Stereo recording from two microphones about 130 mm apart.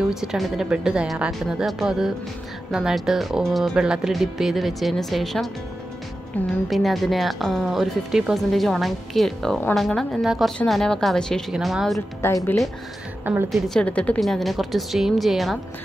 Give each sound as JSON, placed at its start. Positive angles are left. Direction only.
{"t": 0.1, "sound": "speech", "side_deg": -5}
{"t": 6.5, "sound": "speech", "side_deg": 0}
{"t": 12.2, "sound": "speech", "side_deg": 20}
{"t": 13.2, "sound": "a woman's voice", "side_deg": -15}
{"t": 13.5, "sound": "speech", "side_deg": 5}